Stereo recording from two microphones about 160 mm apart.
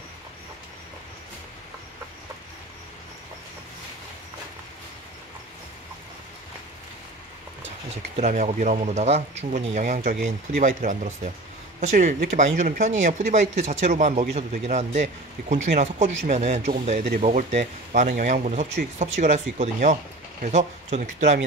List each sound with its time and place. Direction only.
8.2 s speech: 45° right (ahead or behind)